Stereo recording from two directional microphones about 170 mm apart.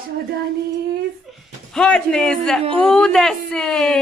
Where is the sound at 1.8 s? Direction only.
5° left (ahead or behind).